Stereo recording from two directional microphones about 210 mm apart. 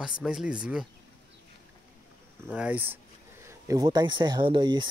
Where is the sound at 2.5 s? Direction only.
5° right (ahead or behind).